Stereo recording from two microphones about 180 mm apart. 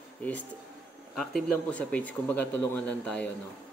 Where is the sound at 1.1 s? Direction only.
5° left (ahead or behind).